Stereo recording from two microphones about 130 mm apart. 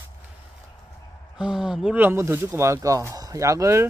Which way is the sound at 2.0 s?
20° right (ahead or behind).